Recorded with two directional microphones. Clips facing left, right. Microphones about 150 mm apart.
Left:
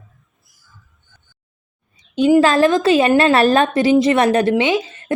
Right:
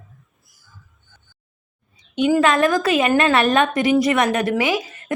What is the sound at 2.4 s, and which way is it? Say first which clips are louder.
A woman's voice: left 4 dB; 30° left (ahead or behind).